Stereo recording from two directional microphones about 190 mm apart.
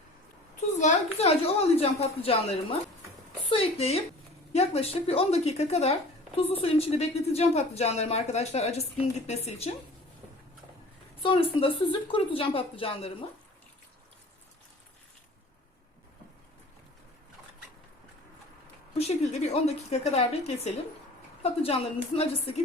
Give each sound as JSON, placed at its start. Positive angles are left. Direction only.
{"t": 0.8, "sound": "speech", "side_deg": 35}
{"t": 11.2, "sound": "a woman's voice", "side_deg": 30}
{"t": 18.9, "sound": "speech", "side_deg": 35}